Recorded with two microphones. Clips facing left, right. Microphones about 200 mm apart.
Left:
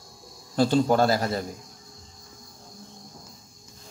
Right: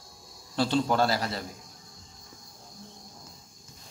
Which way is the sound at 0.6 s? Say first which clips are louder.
Left 5 dB; 45° left (ahead or behind).